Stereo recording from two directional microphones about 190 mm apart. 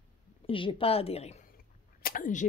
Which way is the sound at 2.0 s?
45° left (ahead or behind).